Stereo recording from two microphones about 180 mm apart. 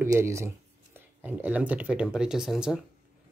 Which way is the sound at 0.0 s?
15° right (ahead or behind).